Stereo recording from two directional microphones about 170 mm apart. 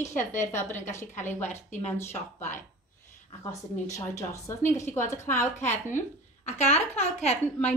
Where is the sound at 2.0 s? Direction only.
15° left (ahead or behind).